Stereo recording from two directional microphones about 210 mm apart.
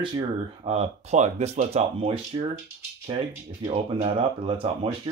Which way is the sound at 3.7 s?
25° right (ahead or behind).